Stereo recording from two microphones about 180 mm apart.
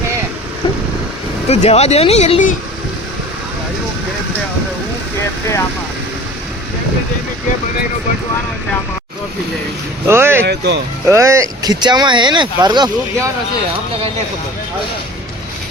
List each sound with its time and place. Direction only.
1.5 s speech: 35° left (ahead or behind)
10.1 s speech: 15° right (ahead or behind)
10.4 s speech: 65° right (ahead or behind)
11.1 s speech: 15° right (ahead or behind)